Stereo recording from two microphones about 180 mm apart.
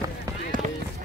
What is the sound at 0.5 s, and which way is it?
Run, 50° right (ahead or behind).